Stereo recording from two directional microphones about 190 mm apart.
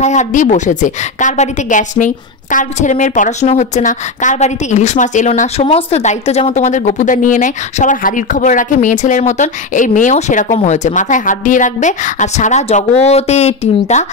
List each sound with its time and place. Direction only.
0.0 s a woman's voice: 40° left (ahead or behind)